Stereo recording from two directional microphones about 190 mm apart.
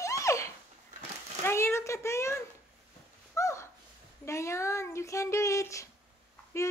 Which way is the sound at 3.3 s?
15° left (ahead or behind).